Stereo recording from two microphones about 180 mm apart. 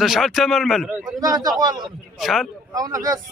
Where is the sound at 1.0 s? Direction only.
20° right (ahead or behind).